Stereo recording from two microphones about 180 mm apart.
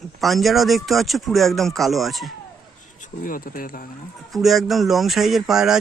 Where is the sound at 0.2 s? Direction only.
Centre (ahead or behind).